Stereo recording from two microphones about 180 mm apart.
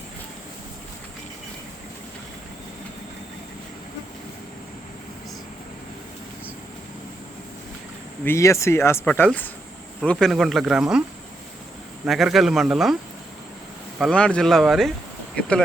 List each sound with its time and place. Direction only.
8.2 s speech: 15° left (ahead or behind); by 11.0 s 5° right (ahead or behind)
12.0 s speech: centre (ahead or behind)
14.0 s speech: 5° left (ahead or behind)